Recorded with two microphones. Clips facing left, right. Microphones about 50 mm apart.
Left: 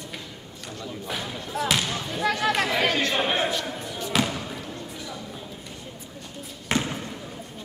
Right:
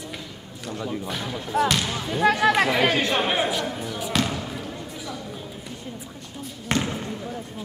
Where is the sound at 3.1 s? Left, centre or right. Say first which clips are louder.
Right 2 dB; centre.